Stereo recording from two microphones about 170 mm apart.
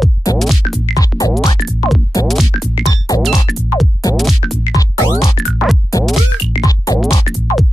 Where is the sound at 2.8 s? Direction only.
20° left (ahead or behind).